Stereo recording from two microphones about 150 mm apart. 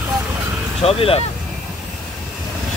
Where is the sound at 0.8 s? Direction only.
40° left (ahead or behind).